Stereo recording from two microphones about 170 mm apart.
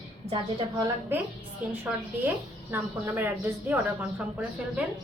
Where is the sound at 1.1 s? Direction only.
10° right (ahead or behind).